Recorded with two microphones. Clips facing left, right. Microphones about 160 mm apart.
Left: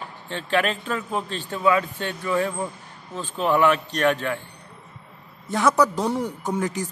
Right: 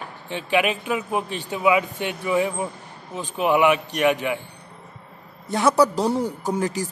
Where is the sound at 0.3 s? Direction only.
15° right (ahead or behind).